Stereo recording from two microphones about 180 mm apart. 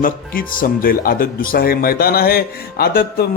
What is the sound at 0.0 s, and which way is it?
Speech, 50° left (ahead or behind).